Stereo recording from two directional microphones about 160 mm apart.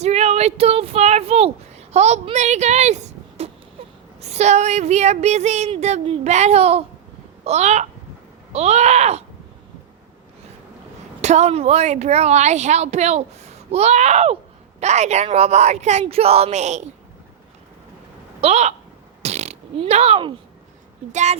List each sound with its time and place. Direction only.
0.0 s a sound: 40° right (ahead or behind)
3.8 s wail: 35° right (ahead or behind)
4.2 s a woman's voice: 45° right (ahead or behind)
11.2 s a woman's voice: 45° right (ahead or behind)
18.3 s speech: 40° right (ahead or behind)
19.2 s fart: 45° right (ahead or behind)
21.1 s a woman's voice: 45° right (ahead or behind)